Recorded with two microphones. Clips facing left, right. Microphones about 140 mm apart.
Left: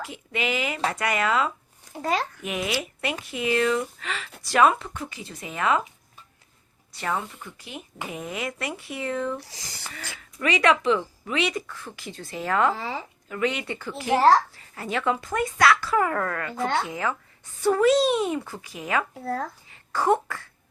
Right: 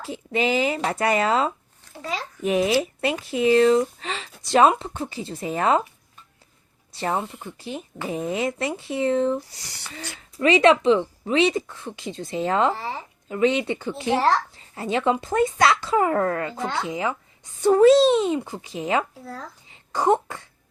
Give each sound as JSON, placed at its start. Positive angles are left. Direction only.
{"t": 0.0, "sound": "speech", "side_deg": -30}
{"t": 2.0, "sound": "a child's voice", "side_deg": 55}
{"t": 2.4, "sound": "speech", "side_deg": -30}
{"t": 6.9, "sound": "speech", "side_deg": -30}
{"t": 9.4, "sound": "speech", "side_deg": 90}
{"t": 9.9, "sound": "speech", "side_deg": -30}
{"t": 19.2, "sound": "a child's voice", "side_deg": 60}
{"t": 19.7, "sound": "a sound", "side_deg": -20}